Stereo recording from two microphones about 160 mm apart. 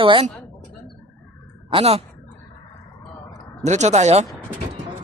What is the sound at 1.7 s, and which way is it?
Speech, 35° right (ahead or behind).